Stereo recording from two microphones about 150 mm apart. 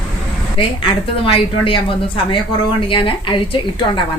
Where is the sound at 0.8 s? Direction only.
35° left (ahead or behind).